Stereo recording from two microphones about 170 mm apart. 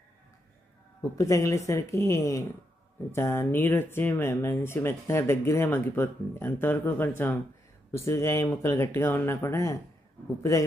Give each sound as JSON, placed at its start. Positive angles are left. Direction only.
{"t": 1.2, "sound": "speech", "side_deg": 20}